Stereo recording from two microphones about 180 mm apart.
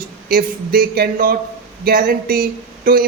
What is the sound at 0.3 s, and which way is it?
A man's voice, 55° right (ahead or behind).